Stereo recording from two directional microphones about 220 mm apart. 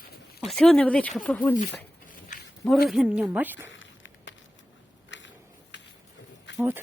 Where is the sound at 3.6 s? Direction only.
60° left (ahead or behind).